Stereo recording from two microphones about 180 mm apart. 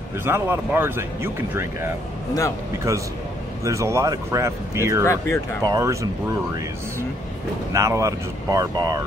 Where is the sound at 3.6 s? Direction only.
15° right (ahead or behind).